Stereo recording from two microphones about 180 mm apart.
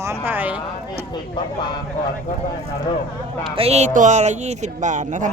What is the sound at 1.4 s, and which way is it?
Speech, 25° left (ahead or behind).